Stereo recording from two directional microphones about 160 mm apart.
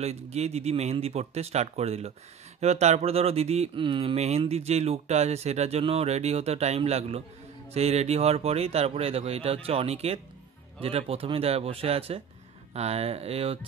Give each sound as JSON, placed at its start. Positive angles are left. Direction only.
{"t": 0.0, "sound": "speech", "side_deg": -40}